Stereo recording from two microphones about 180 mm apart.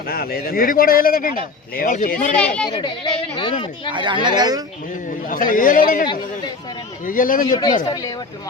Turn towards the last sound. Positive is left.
turn(degrees=25)  # may be behind; listen again after turning